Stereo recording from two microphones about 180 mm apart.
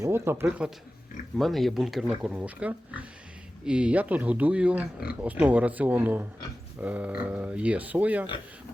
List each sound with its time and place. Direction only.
0.0 s speech: 15° right (ahead or behind)
1.4 s speech: centre (ahead or behind)